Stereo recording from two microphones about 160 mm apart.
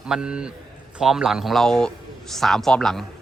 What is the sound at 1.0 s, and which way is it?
A man's voice, 5° right (ahead or behind).